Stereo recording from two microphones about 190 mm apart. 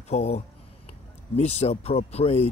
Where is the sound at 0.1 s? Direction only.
35° left (ahead or behind).